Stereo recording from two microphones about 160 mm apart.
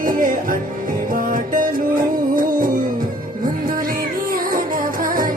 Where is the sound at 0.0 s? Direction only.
60° right (ahead or behind).